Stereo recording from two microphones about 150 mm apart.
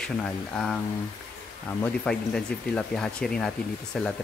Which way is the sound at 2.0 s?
5° left (ahead or behind).